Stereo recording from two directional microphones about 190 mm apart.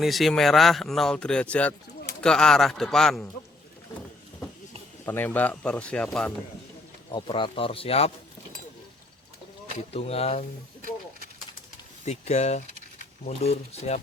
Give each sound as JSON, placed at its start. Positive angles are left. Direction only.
{"t": 0.0, "sound": "speech", "side_deg": 0}
{"t": 5.0, "sound": "speech", "side_deg": 10}
{"t": 7.1, "sound": "speech", "side_deg": 25}
{"t": 9.7, "sound": "speech", "side_deg": 30}
{"t": 12.0, "sound": "speech", "side_deg": 35}